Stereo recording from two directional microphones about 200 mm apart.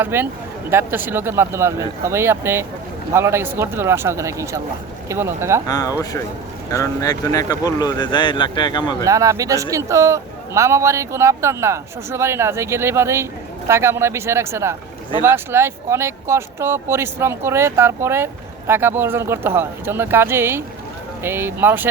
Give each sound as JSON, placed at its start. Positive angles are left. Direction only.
{"t": 0.0, "sound": "a man's voice", "side_deg": -10}
{"t": 5.6, "sound": "speech", "side_deg": 20}
{"t": 9.0, "sound": "a man's voice", "side_deg": -15}